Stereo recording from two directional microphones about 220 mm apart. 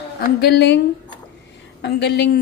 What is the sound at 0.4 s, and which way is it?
Speech, 50° left (ahead or behind).